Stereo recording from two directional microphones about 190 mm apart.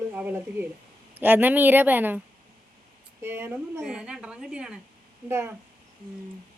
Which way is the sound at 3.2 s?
10° right (ahead or behind).